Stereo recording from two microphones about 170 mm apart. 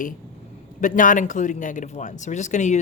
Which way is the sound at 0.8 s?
50° left (ahead or behind).